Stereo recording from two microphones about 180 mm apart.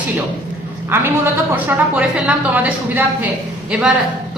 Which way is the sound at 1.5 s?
10° right (ahead or behind).